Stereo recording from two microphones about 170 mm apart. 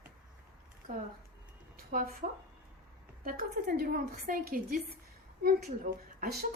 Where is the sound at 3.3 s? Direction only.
60° right (ahead or behind).